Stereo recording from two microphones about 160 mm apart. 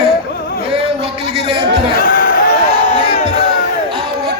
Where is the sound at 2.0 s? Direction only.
60° left (ahead or behind).